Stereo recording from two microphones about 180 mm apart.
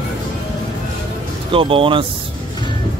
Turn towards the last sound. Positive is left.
turn(degrees=-30)  # may be behind; listen again after turning